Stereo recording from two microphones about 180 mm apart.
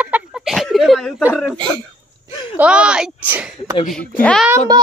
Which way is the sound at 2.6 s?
5° right (ahead or behind).